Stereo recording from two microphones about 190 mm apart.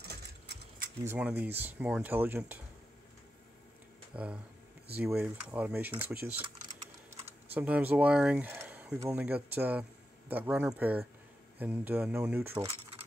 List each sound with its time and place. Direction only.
0.1 s sewing machine: 55° right (ahead or behind)
1.0 s speech: 10° right (ahead or behind)
4.1 s speech: 5° right (ahead or behind)
7.5 s speech: 10° right (ahead or behind)